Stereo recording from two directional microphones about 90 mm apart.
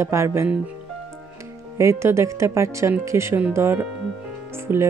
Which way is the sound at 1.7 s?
30° right (ahead or behind).